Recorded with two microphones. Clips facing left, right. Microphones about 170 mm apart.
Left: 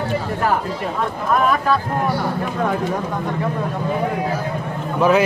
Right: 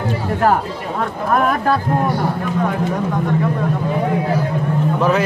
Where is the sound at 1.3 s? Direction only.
50° right (ahead or behind).